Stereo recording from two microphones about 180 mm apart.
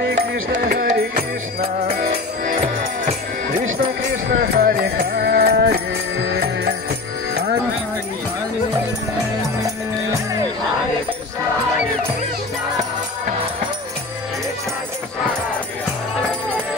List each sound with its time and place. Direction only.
0.0 s music: 75° right (ahead or behind); by 2.5 s 50° right (ahead or behind)
4.4 s music: 55° right (ahead or behind)